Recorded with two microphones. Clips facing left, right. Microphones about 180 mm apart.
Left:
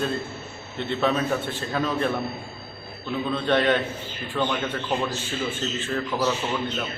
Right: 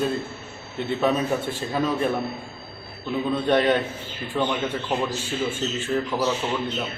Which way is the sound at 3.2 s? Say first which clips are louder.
Right 2 dB; 10° right (ahead or behind).